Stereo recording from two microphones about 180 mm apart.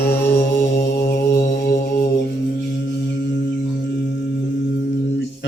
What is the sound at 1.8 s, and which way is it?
Music, 65° left (ahead or behind).